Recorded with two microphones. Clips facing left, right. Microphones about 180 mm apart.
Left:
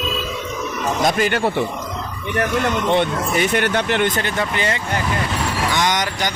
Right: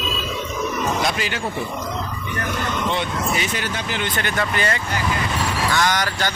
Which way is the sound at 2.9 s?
55° left (ahead or behind).